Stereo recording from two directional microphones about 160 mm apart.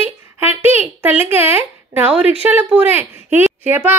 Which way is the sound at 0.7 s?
10° right (ahead or behind).